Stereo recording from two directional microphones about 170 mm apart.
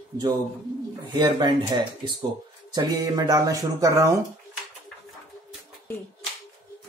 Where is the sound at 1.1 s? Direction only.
25° right (ahead or behind).